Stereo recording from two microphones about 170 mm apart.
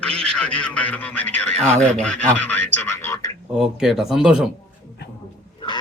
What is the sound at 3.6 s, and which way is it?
Speech, centre (ahead or behind).